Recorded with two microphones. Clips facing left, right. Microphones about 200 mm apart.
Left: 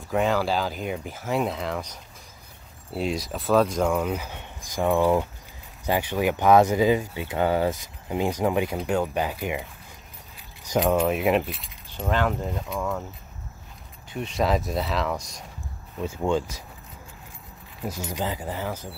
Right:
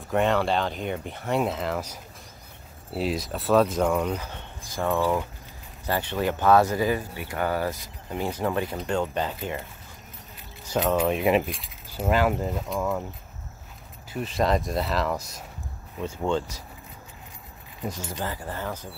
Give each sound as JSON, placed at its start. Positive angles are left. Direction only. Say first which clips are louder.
{"t": 0.1, "sound": "speech", "louder": "even", "side_deg": 0}
{"t": 10.7, "sound": "speech", "louder": "left 2 dB", "side_deg": 10}
{"t": 14.1, "sound": "speech", "louder": "even", "side_deg": 0}
{"t": 16.0, "sound": "speech", "louder": "left 2 dB", "side_deg": 10}
{"t": 18.0, "sound": "speech", "louder": "left 3 dB", "side_deg": 15}